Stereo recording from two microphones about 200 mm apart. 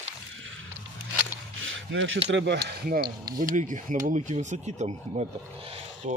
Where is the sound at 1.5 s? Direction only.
70° right (ahead or behind).